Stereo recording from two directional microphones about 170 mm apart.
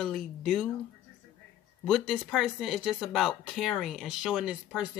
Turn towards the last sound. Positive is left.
turn(degrees=-5)  # may be behind; listen again after turning